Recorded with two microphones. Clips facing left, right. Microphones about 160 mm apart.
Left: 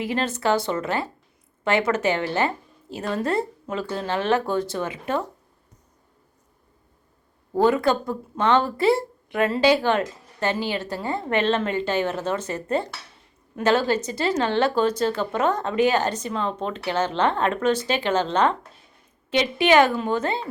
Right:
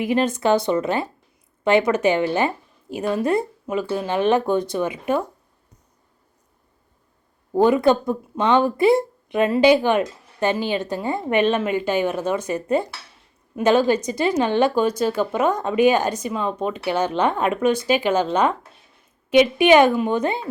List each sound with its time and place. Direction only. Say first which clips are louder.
0.0 s speech: right 4 dB; 15° right (ahead or behind)
7.5 s speech: right 3 dB; 15° right (ahead or behind)